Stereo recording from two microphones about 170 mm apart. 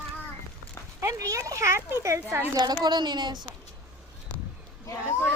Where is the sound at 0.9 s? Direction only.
15° right (ahead or behind).